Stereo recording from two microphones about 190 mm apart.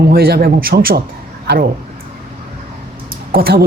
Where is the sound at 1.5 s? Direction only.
60° right (ahead or behind).